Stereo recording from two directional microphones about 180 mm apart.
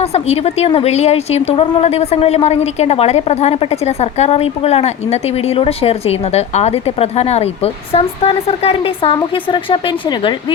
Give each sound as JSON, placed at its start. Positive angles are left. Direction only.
{"t": 0.0, "sound": "a woman's voice", "side_deg": 35}